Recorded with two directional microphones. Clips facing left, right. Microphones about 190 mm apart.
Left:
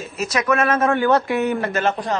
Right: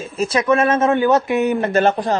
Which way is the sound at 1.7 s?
35° right (ahead or behind).